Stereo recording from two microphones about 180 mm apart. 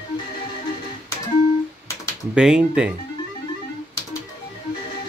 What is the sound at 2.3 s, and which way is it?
Speech, 5° right (ahead or behind).